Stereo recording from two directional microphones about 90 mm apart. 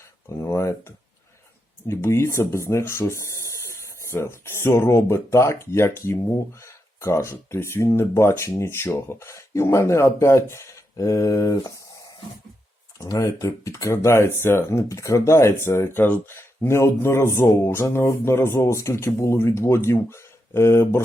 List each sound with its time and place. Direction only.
0.3 s speech: 30° left (ahead or behind)